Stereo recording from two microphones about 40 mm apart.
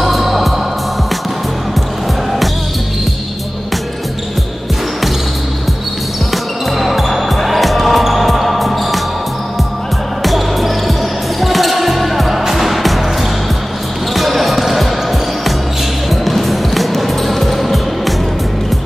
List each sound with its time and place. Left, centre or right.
0.0 s music: centre
6.3 s basketball bounce: centre
10.2 s music: centre
14.1 s basketball bounce: centre
16.1 s music: centre